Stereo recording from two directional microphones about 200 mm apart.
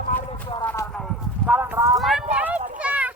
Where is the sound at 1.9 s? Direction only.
Centre (ahead or behind).